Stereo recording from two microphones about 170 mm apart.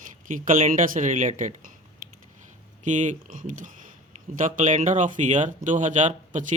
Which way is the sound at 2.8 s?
45° right (ahead or behind).